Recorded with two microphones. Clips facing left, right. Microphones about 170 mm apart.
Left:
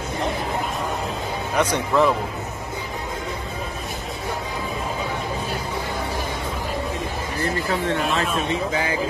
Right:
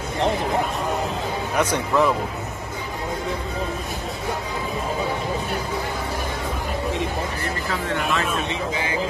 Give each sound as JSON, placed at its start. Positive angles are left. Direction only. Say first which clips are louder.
{"t": 1.6, "sound": "speech", "louder": "left 1 dB", "side_deg": -5}
{"t": 7.4, "sound": "speech", "louder": "left 3 dB", "side_deg": 35}